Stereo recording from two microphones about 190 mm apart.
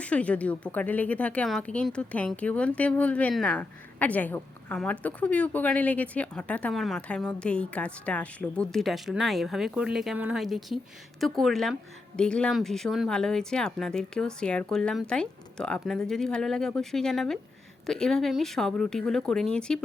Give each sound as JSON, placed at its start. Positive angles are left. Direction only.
{"t": 0.0, "sound": "a woman's voice", "side_deg": 5}